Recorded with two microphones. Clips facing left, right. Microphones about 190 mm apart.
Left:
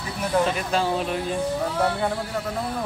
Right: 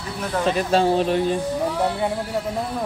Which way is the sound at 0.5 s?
30° right (ahead or behind).